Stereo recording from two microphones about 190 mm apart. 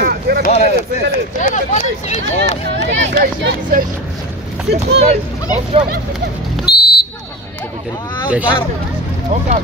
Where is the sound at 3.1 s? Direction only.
45° right (ahead or behind).